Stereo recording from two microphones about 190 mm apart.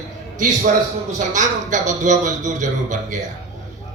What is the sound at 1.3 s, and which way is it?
A man's voice, 40° right (ahead or behind).